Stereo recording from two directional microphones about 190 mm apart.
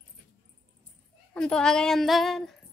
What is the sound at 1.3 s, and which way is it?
Speech, 5° left (ahead or behind).